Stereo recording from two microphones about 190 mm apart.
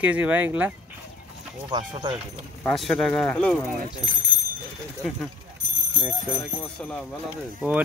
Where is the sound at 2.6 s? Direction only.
5° left (ahead or behind).